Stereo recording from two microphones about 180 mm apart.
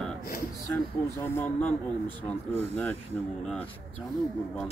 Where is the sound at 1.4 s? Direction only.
10° left (ahead or behind).